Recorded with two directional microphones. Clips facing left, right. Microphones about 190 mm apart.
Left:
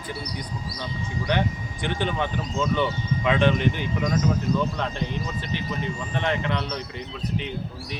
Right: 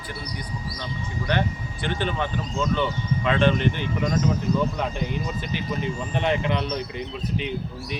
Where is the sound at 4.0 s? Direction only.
Centre (ahead or behind).